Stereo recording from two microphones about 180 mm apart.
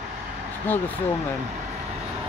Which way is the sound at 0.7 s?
10° left (ahead or behind).